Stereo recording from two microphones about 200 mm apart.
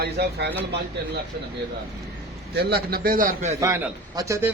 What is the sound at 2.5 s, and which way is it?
Speech, 50° right (ahead or behind).